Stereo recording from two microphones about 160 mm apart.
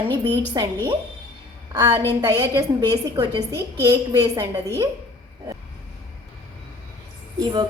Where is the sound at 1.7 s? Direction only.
25° right (ahead or behind).